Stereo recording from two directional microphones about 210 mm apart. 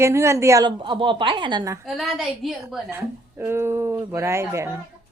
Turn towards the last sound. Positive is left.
turn(degrees=-10)  # may be behind; listen again after turning